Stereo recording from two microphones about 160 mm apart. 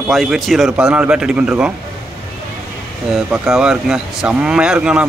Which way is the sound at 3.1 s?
5° right (ahead or behind).